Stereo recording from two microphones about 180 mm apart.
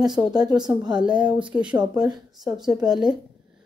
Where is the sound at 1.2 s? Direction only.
30° right (ahead or behind).